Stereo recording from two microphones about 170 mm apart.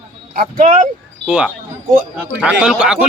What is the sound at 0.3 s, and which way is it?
Speech, 50° right (ahead or behind).